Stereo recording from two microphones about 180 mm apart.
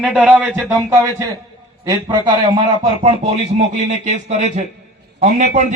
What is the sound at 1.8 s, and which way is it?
Speech, 25° right (ahead or behind).